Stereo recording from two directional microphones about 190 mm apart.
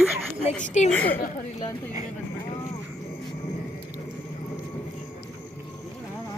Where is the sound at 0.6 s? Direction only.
40° left (ahead or behind).